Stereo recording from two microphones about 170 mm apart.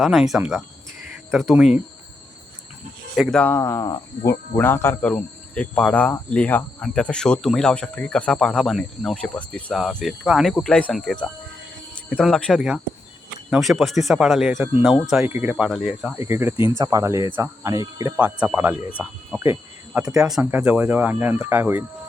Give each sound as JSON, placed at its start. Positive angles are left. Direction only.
{"t": 0.0, "sound": "cricket", "side_deg": 0}
{"t": 3.2, "sound": "cricket", "side_deg": 5}
{"t": 16.2, "sound": "speech", "side_deg": -15}